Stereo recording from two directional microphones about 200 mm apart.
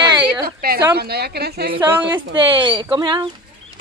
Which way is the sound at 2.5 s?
20° right (ahead or behind).